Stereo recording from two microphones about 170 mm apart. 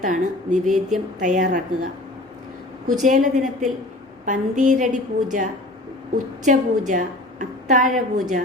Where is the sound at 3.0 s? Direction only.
45° right (ahead or behind).